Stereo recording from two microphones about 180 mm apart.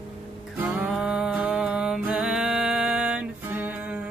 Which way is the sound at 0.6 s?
5° right (ahead or behind).